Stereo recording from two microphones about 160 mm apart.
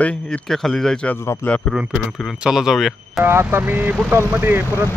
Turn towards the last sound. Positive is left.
turn(degrees=-15)  # may be behind; listen again after turning